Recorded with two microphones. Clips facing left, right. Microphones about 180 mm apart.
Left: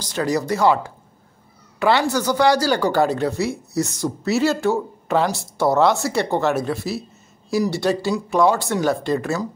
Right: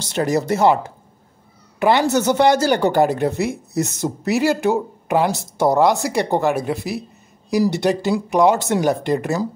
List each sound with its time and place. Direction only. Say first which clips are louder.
0.0 s a woman's voice: right 2 dB; 20° right (ahead or behind)